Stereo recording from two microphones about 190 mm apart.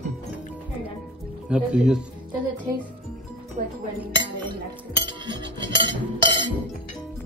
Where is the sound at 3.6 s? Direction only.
45° right (ahead or behind).